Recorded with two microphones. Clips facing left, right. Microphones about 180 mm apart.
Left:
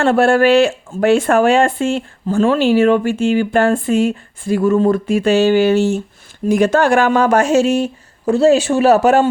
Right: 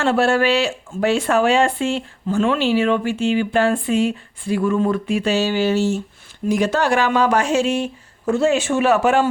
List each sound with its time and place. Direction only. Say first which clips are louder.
0.0 s speech: left 5 dB; 50° left (ahead or behind)